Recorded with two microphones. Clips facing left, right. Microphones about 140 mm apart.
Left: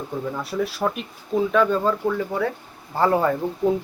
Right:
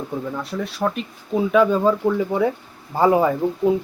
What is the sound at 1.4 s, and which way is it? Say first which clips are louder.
Speech: right 3 dB; 10° right (ahead or behind).